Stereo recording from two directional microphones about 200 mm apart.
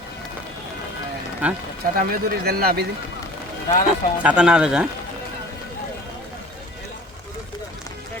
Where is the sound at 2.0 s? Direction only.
50° right (ahead or behind).